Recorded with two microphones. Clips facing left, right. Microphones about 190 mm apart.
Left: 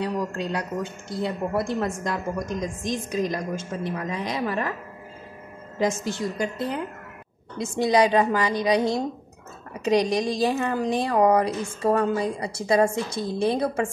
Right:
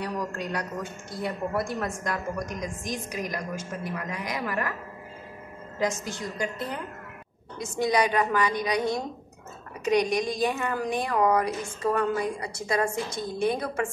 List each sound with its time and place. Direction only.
0.0 s a woman's voice: 25° left (ahead or behind)
5.8 s a woman's voice: 25° left (ahead or behind)